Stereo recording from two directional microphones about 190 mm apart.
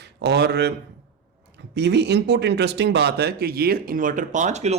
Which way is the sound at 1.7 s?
65° right (ahead or behind).